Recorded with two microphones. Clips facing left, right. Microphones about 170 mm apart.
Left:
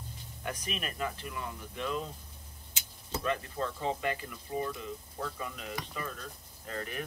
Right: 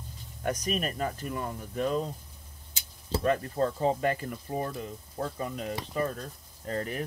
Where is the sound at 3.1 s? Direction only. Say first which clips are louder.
Right 6 dB; 40° right (ahead or behind).